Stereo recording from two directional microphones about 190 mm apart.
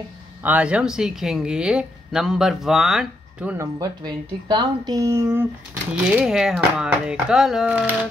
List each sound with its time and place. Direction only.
0.4 s speech: 10° right (ahead or behind)
3.8 s speech: 25° right (ahead or behind); by 7.9 s 5° right (ahead or behind)